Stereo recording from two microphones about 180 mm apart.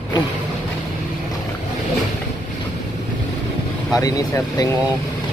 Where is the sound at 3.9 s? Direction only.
20° left (ahead or behind).